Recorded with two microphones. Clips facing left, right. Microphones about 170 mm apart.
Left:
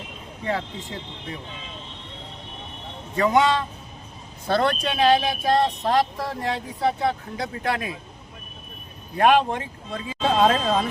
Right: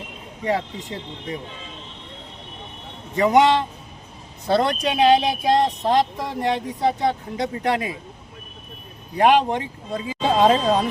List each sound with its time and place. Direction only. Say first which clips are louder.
0.4 s speech: right 4 dB; 20° right (ahead or behind)
3.2 s speech: right 3 dB; 20° right (ahead or behind)
9.1 s speech: right 2 dB; 20° right (ahead or behind)